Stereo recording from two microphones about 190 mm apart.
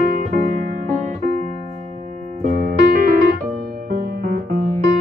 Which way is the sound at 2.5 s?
50° right (ahead or behind).